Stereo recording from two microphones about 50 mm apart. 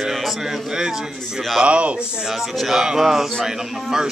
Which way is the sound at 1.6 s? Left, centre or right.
Right.